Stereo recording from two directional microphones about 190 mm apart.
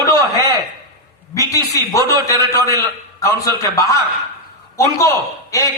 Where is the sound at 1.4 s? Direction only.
15° left (ahead or behind).